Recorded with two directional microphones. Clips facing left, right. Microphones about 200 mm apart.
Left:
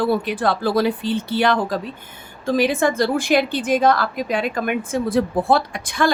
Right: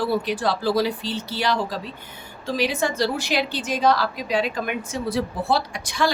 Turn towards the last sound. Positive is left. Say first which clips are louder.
# left 3 dB
turn(degrees=55)  # may be behind; listen again after turning